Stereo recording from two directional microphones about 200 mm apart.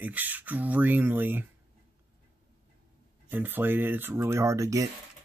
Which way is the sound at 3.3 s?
10° right (ahead or behind).